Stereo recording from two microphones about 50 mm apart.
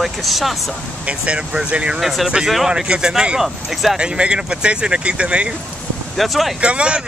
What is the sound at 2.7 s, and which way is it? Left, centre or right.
Speech, centre.